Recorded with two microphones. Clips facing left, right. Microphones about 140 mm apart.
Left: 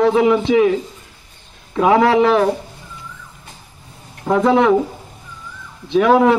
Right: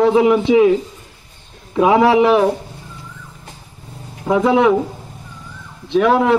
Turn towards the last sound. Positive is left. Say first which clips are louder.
# left 2 dB
turn(degrees=0)  # may be behind; listen again after turning